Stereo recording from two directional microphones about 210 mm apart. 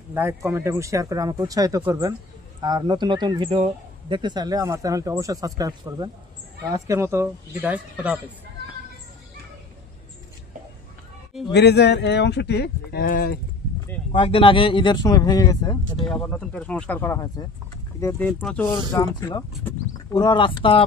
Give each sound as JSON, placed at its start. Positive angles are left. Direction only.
{"t": 0.1, "sound": "speech", "side_deg": -10}
{"t": 11.5, "sound": "speech", "side_deg": 50}
{"t": 14.1, "sound": "speech", "side_deg": 25}
{"t": 16.0, "sound": "speech", "side_deg": 5}
{"t": 18.7, "sound": "speech", "side_deg": 15}